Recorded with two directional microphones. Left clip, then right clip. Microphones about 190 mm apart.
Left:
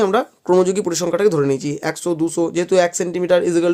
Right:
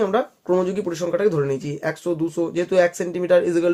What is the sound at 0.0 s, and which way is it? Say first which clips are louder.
Speech: left 4 dB; 40° left (ahead or behind).